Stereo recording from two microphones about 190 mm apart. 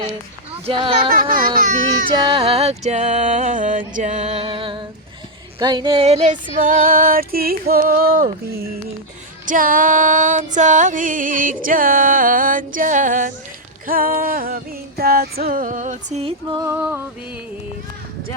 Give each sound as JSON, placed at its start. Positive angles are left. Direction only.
{"t": 0.6, "sound": "speech", "side_deg": -25}
{"t": 1.1, "sound": "music", "side_deg": -45}
{"t": 2.0, "sound": "music", "side_deg": -30}
{"t": 16.6, "sound": "music", "side_deg": -10}